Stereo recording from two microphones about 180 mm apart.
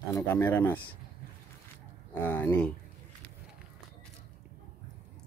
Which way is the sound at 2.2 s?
10° left (ahead or behind).